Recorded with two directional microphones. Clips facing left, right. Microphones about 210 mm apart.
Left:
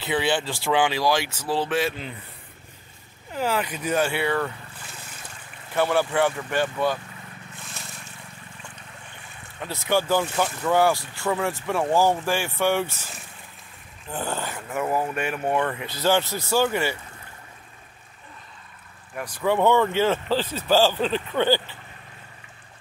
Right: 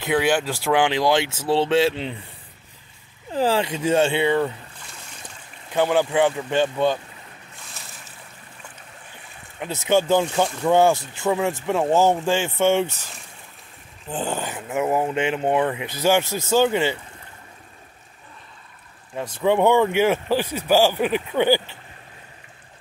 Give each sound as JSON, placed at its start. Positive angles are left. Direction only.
{"t": 0.0, "sound": "speech", "side_deg": -10}
{"t": 3.3, "sound": "speech", "side_deg": -30}
{"t": 5.7, "sound": "speech", "side_deg": -15}
{"t": 7.8, "sound": "boat", "side_deg": 0}
{"t": 9.6, "sound": "speech", "side_deg": -20}
{"t": 14.0, "sound": "speech", "side_deg": -20}
{"t": 19.1, "sound": "speech", "side_deg": -25}